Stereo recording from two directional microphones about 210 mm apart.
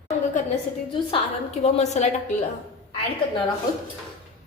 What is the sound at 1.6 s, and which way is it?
Speech, 30° left (ahead or behind).